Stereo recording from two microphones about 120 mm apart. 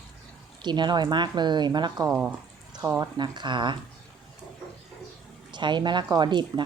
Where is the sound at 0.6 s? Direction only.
40° right (ahead or behind).